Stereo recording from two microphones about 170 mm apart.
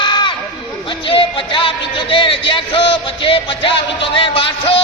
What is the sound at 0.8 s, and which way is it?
Speech, 30° left (ahead or behind).